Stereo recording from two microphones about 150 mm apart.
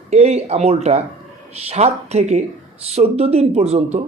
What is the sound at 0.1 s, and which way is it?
Speech, 45° right (ahead or behind).